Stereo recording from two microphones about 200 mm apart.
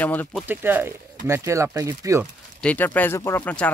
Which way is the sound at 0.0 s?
10° left (ahead or behind).